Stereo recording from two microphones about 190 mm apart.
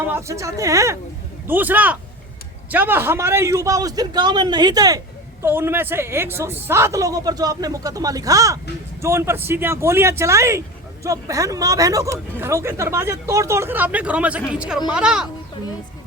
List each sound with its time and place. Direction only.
0.1 s a child's voice: 15° right (ahead or behind)